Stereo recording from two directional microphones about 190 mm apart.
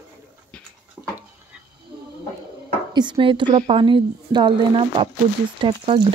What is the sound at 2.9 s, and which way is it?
Speech, 25° right (ahead or behind).